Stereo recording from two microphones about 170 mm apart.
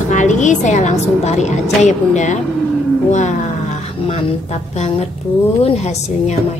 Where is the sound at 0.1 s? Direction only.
45° left (ahead or behind).